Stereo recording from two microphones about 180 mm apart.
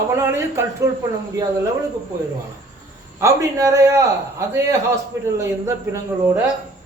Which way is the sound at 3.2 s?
15° right (ahead or behind).